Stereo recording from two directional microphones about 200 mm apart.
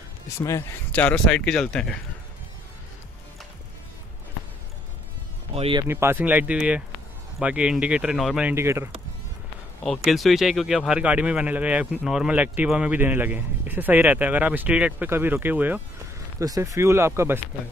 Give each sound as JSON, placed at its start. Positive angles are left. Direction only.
{"t": 0.4, "sound": "speech", "side_deg": 15}
{"t": 5.5, "sound": "speech", "side_deg": -30}
{"t": 5.9, "sound": "speech", "side_deg": -10}
{"t": 9.8, "sound": "speech", "side_deg": 0}